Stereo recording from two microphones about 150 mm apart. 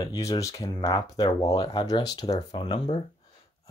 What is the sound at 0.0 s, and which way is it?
Speech, 25° left (ahead or behind).